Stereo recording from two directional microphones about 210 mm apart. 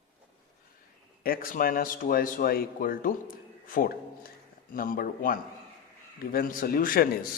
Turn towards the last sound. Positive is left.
turn(degrees=45)  # may be behind; listen again after turning